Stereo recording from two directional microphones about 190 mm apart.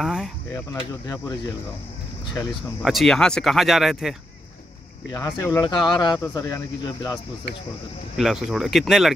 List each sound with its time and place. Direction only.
0.0 s speech: centre (ahead or behind)
1.0 s speech: 20° left (ahead or behind)
2.8 s speech: centre (ahead or behind)
5.1 s speech: 15° left (ahead or behind)
8.2 s speech: centre (ahead or behind)